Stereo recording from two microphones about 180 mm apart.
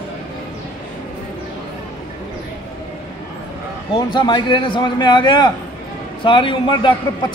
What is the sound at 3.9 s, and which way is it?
A man's voice, 25° left (ahead or behind).